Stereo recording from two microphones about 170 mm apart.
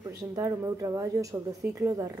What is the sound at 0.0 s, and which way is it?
A woman's voice, 20° right (ahead or behind).